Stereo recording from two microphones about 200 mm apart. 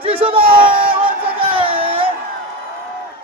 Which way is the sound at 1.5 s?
25° right (ahead or behind).